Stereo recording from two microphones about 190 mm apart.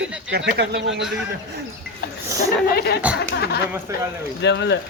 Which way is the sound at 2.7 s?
55° left (ahead or behind).